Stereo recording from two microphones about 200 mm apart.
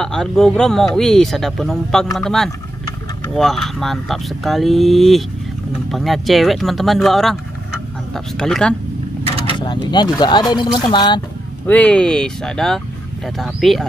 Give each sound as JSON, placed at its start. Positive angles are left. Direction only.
{"t": 0.0, "sound": "speech", "side_deg": 0}
{"t": 9.5, "sound": "speech", "side_deg": 20}
{"t": 11.6, "sound": "speech", "side_deg": 5}